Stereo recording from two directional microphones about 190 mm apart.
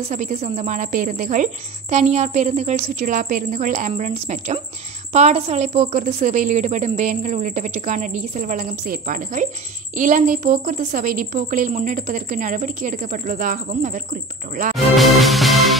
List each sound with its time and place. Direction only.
0.1 s a woman's voice: 40° right (ahead or behind)
15.0 s music: centre (ahead or behind)